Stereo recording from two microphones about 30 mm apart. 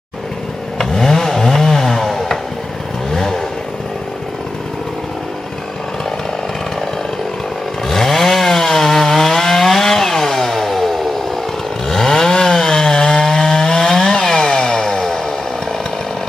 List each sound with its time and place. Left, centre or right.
0.7 s chainsaw: centre
3.1 s vehicle: centre
7.9 s chainsaw: centre